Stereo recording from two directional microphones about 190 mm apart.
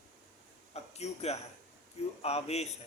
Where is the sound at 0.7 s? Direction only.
35° left (ahead or behind).